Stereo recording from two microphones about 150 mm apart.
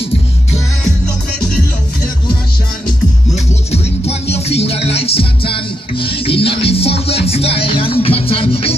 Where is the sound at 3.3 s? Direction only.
45° left (ahead or behind).